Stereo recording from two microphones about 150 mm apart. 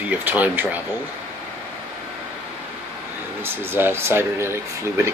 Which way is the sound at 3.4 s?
15° right (ahead or behind).